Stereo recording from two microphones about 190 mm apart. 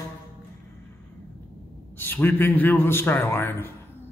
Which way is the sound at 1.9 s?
10° left (ahead or behind).